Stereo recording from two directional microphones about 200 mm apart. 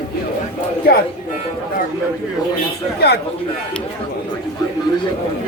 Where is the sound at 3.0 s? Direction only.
55° left (ahead or behind).